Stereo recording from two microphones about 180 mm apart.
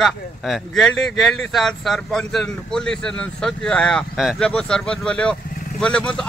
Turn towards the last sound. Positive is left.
turn(degrees=5)  # may be behind; listen again after turning